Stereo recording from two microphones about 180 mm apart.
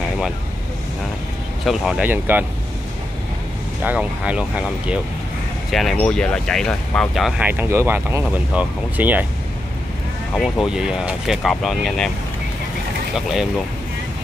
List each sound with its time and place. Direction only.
1.6 s speech: centre (ahead or behind)
3.8 s speech: 5° right (ahead or behind)
10.3 s speech: centre (ahead or behind)
13.1 s speech: centre (ahead or behind)